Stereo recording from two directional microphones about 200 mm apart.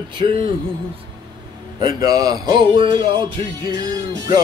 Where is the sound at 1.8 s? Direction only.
20° right (ahead or behind).